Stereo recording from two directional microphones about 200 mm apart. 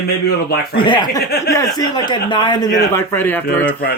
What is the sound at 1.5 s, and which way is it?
Speech, 20° left (ahead or behind).